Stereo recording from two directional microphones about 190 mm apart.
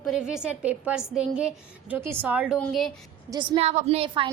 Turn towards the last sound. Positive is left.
turn(degrees=-30)  # may be behind; listen again after turning